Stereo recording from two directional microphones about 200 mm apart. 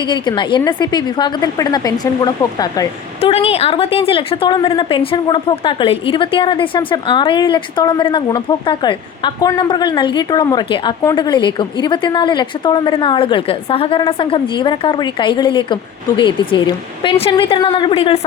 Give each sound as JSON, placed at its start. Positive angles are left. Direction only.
{"t": 0.0, "sound": "a woman's voice", "side_deg": 25}
{"t": 3.2, "sound": "a woman's voice", "side_deg": 30}